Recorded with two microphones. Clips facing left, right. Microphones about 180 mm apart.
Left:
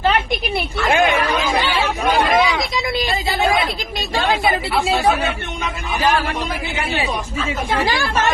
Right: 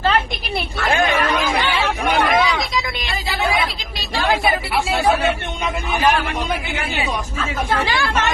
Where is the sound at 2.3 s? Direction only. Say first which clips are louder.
Left 1 dB; centre (ahead or behind).